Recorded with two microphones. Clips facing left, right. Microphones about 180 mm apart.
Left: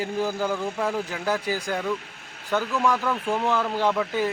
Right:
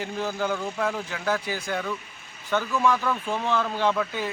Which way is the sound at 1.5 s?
35° left (ahead or behind).